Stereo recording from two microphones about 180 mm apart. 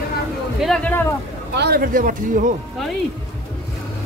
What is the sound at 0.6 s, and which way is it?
Speech, 5° left (ahead or behind).